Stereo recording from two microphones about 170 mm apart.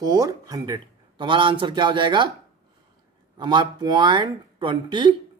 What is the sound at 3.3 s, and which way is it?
A man's voice, 25° right (ahead or behind).